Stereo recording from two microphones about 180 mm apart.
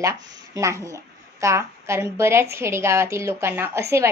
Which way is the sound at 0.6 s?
15° right (ahead or behind).